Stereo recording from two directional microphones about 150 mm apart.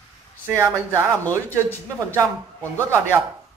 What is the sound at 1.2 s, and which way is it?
Speech, 10° left (ahead or behind).